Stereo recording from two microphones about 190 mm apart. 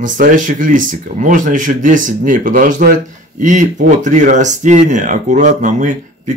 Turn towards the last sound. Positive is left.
turn(degrees=-40)  # may be behind; listen again after turning